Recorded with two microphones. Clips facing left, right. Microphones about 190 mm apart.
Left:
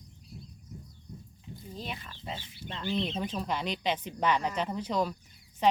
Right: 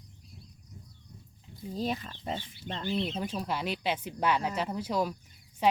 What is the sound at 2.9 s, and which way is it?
Speech, 5° right (ahead or behind).